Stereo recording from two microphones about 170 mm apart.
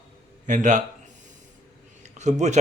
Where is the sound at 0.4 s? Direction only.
45° right (ahead or behind).